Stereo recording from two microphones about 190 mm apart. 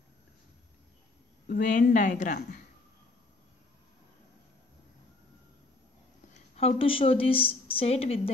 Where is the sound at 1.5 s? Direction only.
45° left (ahead or behind).